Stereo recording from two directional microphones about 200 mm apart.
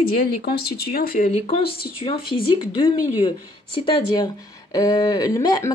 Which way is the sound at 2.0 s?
25° left (ahead or behind).